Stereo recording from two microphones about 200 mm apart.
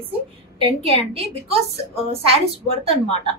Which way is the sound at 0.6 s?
30° right (ahead or behind).